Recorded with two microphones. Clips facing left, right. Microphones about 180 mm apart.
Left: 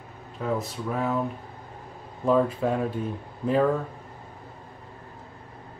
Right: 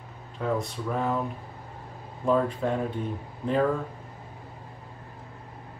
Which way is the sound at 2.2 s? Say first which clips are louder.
Left 2 dB; 5° left (ahead or behind).